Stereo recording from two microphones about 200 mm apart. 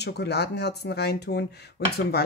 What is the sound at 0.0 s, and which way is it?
Speech, 55° left (ahead or behind).